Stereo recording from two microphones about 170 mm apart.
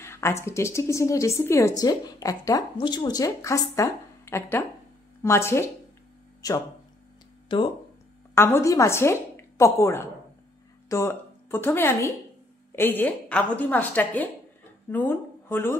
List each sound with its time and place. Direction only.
0.0 s a woman's voice: 15° left (ahead or behind)
8.4 s a woman's voice: 15° left (ahead or behind)